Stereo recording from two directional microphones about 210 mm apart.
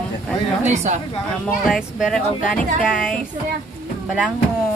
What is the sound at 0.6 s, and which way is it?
Speech, 35° right (ahead or behind).